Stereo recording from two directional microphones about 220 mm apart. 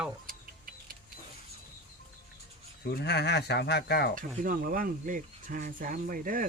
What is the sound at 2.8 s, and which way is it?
Speech, 50° left (ahead or behind).